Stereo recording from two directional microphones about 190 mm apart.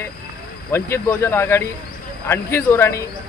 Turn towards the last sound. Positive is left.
turn(degrees=15)  # may be behind; listen again after turning